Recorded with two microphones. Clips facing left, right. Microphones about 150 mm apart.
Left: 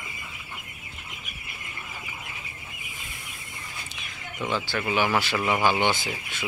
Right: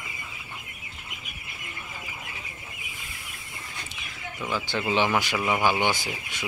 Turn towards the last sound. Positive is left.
turn(degrees=-10)  # may be behind; listen again after turning